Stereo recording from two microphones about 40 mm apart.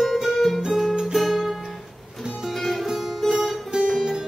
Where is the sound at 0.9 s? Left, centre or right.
Centre.